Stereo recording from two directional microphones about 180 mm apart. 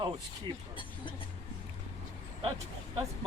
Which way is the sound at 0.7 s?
25° left (ahead or behind).